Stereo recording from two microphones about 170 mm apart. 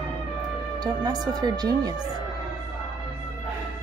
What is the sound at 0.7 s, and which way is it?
Speech, 25° right (ahead or behind).